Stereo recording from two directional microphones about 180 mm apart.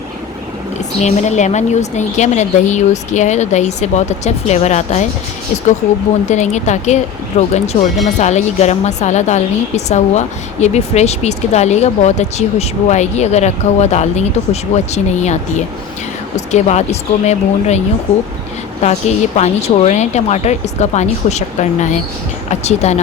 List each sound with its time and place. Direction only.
0.9 s a woman's voice: 40° left (ahead or behind)
6.2 s a woman's voice: 40° left (ahead or behind)